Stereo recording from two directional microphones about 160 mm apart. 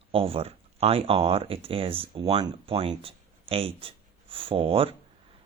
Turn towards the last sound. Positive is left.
turn(degrees=-35)  # may be behind; listen again after turning